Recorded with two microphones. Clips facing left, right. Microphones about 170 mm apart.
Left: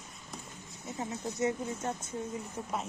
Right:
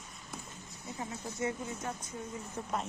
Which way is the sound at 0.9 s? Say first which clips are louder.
Left 4 dB; 25° left (ahead or behind).